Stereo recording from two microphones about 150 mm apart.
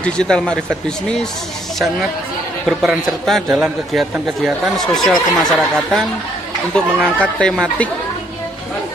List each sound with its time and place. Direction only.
0.0 s a man's voice: 5° left (ahead or behind)
2.6 s a man's voice: centre (ahead or behind)